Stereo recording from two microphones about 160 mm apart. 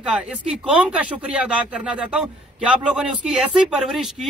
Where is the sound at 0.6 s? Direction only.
5° right (ahead or behind).